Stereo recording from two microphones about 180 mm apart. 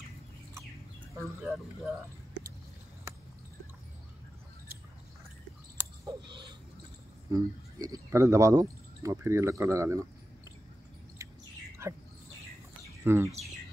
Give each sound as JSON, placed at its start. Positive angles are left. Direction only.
{"t": 1.2, "sound": "speech", "side_deg": 0}
{"t": 6.2, "sound": "a sound", "side_deg": -25}
{"t": 7.2, "sound": "speech", "side_deg": -20}
{"t": 11.2, "sound": "bird", "side_deg": -15}
{"t": 11.8, "sound": "speech", "side_deg": -15}
{"t": 13.0, "sound": "speech", "side_deg": -15}